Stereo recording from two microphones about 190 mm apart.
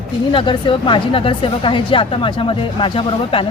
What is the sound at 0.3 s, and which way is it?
Speech, 25° left (ahead or behind).